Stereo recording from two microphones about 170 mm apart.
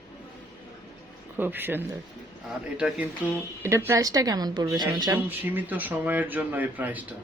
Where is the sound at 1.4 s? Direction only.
10° right (ahead or behind).